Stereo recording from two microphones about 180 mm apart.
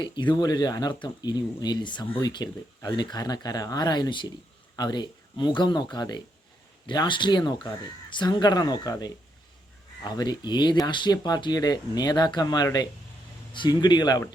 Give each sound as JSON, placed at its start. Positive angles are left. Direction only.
{"t": 0.0, "sound": "speech", "side_deg": 25}